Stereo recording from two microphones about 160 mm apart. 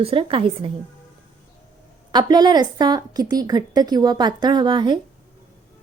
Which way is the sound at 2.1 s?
25° right (ahead or behind).